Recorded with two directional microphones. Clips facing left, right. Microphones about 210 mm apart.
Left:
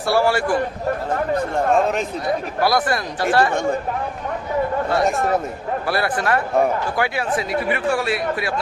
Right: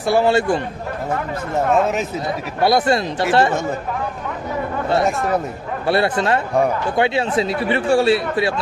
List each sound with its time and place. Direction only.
0.0 s speech: 20° right (ahead or behind)
1.5 s speech: 5° right (ahead or behind)
2.2 s speech: 25° right (ahead or behind)
5.0 s speech: centre (ahead or behind)
5.9 s speech: 25° right (ahead or behind)